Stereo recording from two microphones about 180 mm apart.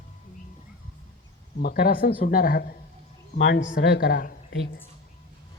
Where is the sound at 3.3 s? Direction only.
70° left (ahead or behind).